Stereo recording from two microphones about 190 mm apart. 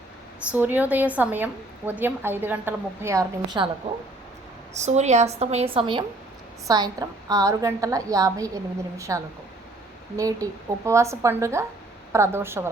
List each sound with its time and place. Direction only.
0.5 s a woman's voice: 10° right (ahead or behind)
4.7 s a woman's voice: 35° right (ahead or behind); by 12.7 s 15° right (ahead or behind)